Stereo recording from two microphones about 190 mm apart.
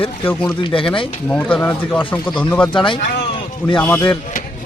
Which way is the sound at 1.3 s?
10° left (ahead or behind).